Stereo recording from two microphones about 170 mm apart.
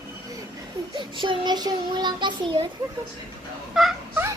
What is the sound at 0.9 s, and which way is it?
A child's voice, 30° right (ahead or behind).